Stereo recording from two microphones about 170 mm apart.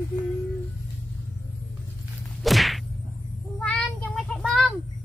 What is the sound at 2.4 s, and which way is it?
Whip, centre (ahead or behind).